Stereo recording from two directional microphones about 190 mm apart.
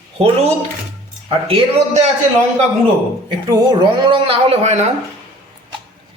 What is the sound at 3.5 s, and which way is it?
Speech, 25° right (ahead or behind).